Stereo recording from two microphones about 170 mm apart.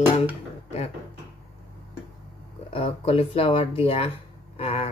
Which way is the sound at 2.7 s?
35° left (ahead or behind).